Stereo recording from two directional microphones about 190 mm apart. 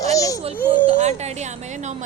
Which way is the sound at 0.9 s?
35° right (ahead or behind).